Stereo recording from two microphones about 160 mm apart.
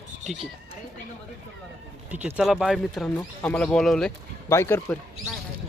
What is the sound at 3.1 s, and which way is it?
Speech, 10° left (ahead or behind).